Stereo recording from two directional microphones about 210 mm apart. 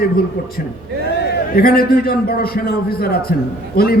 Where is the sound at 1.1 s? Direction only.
50° left (ahead or behind).